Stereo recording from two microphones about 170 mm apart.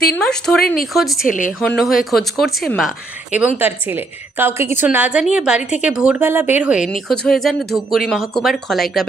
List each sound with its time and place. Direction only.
0.1 s speech: 5° left (ahead or behind)
1.3 s a woman's voice: 50° left (ahead or behind)
1.6 s speech: centre (ahead or behind)
3.3 s a woman's voice: 10° right (ahead or behind)